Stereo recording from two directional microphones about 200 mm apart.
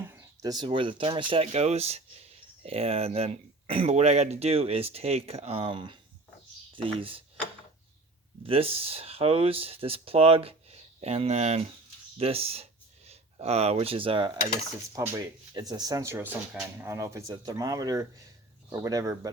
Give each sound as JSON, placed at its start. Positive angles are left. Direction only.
{"t": 0.0, "sound": "speech", "side_deg": -15}
{"t": 8.4, "sound": "speech", "side_deg": -30}